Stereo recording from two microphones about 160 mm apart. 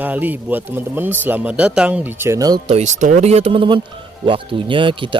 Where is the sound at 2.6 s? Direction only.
45° right (ahead or behind).